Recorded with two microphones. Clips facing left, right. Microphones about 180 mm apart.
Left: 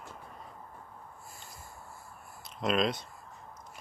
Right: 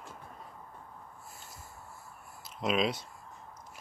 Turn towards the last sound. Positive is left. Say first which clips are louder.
# left 1 dB
turn(degrees=-5)  # may be behind; listen again after turning